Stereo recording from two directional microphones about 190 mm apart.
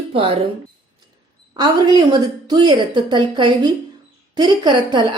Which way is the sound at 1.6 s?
25° right (ahead or behind).